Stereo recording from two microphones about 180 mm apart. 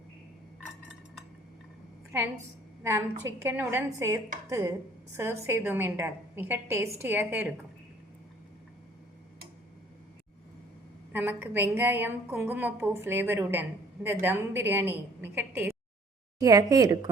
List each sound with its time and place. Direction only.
3.2 s a woman's voice: 15° right (ahead or behind)
11.1 s a woman's voice: 10° right (ahead or behind)